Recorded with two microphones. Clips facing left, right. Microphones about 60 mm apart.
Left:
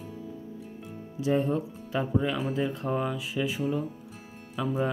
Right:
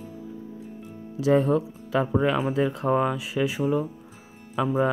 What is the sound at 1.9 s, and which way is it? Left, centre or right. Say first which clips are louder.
Speech: right 5 dB; right.